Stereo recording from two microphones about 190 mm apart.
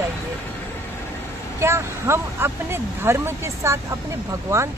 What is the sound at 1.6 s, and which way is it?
Speech, 15° right (ahead or behind).